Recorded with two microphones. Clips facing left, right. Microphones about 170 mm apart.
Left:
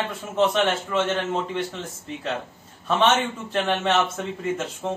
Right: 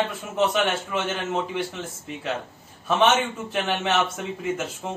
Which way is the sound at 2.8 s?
5° right (ahead or behind).